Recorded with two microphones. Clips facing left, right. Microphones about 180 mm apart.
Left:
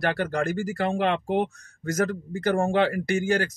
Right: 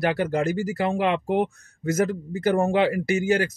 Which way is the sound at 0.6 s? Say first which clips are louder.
Right 1 dB; 50° left (ahead or behind).